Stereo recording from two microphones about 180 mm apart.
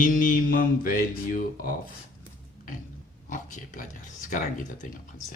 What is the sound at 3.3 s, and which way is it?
Speech, 45° left (ahead or behind).